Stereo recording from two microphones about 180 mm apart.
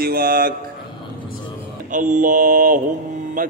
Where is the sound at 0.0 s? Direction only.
55° right (ahead or behind).